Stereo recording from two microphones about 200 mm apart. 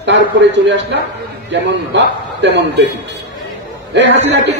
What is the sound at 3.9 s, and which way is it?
Speech, 65° right (ahead or behind).